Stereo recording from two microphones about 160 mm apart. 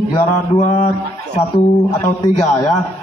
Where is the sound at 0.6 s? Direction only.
45° left (ahead or behind).